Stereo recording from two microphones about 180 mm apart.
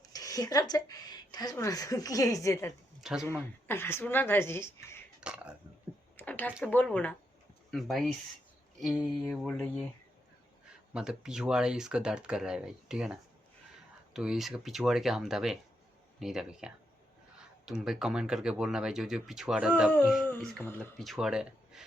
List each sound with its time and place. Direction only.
0.0 s speech: 20° left (ahead or behind)
3.0 s speech: centre (ahead or behind)
3.7 s a woman's voice: 10° left (ahead or behind)
5.2 s speech: 5° right (ahead or behind)
6.1 s a sound: 10° left (ahead or behind)
6.7 s a woman's voice: 10° left (ahead or behind)
10.9 s speech: 5° right (ahead or behind)
20.2 s a woman's voice: 10° left (ahead or behind)